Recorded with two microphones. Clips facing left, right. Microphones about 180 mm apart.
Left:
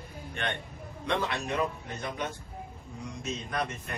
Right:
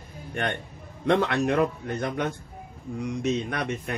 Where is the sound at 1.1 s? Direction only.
65° right (ahead or behind).